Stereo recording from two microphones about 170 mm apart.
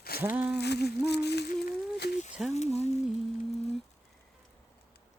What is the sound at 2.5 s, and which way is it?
Speech, 40° left (ahead or behind).